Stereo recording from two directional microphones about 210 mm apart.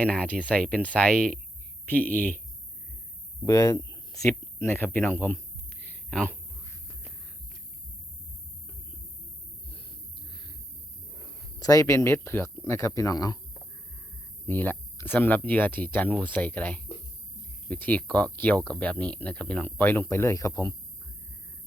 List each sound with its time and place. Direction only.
0.0 s speech: 5° left (ahead or behind)
3.4 s speech: 15° left (ahead or behind)
5.8 s a sound: 5° left (ahead or behind)
11.6 s speech: 15° left (ahead or behind)
14.4 s speech: 10° left (ahead or behind)